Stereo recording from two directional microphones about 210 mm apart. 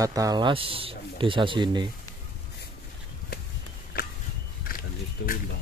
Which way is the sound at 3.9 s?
45° left (ahead or behind).